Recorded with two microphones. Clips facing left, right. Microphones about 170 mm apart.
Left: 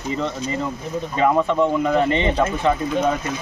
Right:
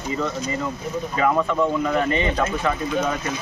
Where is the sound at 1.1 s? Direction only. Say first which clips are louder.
Left 3 dB; 20° left (ahead or behind).